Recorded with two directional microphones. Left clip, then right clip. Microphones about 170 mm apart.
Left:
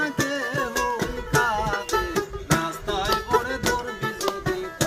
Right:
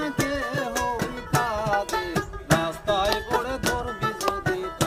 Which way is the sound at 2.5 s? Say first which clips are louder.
Right 4 dB; 40° right (ahead or behind).